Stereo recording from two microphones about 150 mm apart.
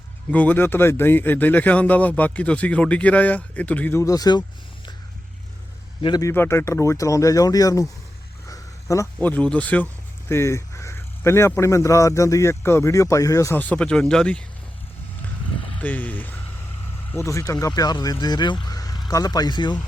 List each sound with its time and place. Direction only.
0.3 s speech: 10° left (ahead or behind); by 4.4 s 25° left (ahead or behind)
6.0 s speech: 25° left (ahead or behind)
6.3 s speech: 15° left (ahead or behind)
8.4 s a sound: 20° left (ahead or behind)
9.1 s speech: 10° left (ahead or behind)
15.8 s speech: 10° left (ahead or behind); by 19.8 s 30° left (ahead or behind)